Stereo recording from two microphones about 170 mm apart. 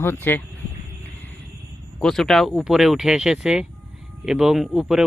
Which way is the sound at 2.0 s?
5° left (ahead or behind).